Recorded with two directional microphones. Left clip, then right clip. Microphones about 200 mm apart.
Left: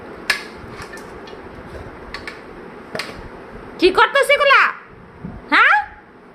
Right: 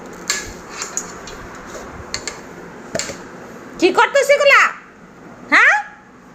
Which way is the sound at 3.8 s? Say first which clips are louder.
Even; 10° left (ahead or behind).